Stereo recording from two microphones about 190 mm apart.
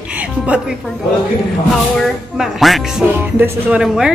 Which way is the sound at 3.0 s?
10° right (ahead or behind).